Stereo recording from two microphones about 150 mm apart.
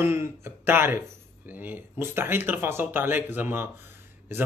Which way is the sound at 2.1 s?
15° right (ahead or behind).